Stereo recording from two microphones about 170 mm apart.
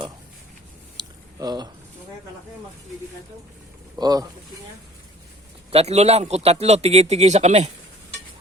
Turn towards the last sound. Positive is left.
turn(degrees=-45)  # may be behind; listen again after turning